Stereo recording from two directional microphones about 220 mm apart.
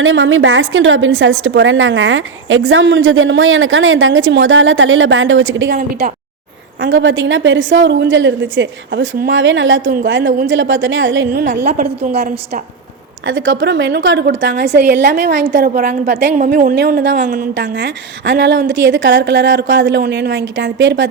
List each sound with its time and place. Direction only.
0.0 s a woman's voice: 60° right (ahead or behind)
5.7 s a woman's voice: 40° right (ahead or behind)
6.8 s a woman's voice: 60° right (ahead or behind)
11.4 s a woman's voice: 35° right (ahead or behind)
13.2 s a woman's voice: 60° right (ahead or behind)
16.3 s a woman's voice: 35° right (ahead or behind); by 17.2 s 55° right (ahead or behind)
17.2 s a woman's voice: 40° right (ahead or behind)
17.5 s a woman's voice: 55° right (ahead or behind)